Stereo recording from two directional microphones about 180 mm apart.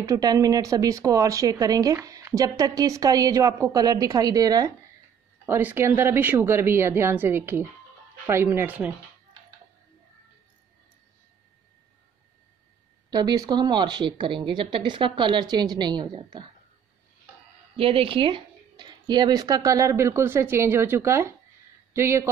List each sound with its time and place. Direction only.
0.0 s speech: 20° right (ahead or behind)
13.1 s speech: 20° right (ahead or behind)
17.7 s speech: 30° right (ahead or behind); by 22.3 s 15° right (ahead or behind)